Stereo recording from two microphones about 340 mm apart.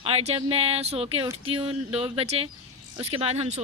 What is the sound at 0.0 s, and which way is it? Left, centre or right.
Speech, centre.